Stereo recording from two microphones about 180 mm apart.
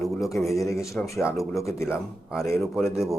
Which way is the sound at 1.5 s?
15° left (ahead or behind).